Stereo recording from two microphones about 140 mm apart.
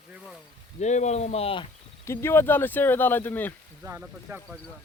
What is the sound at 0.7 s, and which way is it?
Speech, 55° left (ahead or behind).